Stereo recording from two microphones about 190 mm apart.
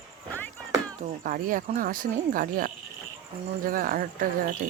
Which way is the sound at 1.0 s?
45° right (ahead or behind).